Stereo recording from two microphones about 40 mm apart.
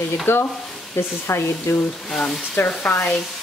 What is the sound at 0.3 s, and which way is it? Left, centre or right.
Speech, left.